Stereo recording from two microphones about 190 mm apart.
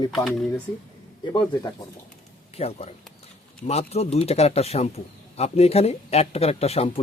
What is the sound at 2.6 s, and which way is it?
A man's voice, 35° left (ahead or behind).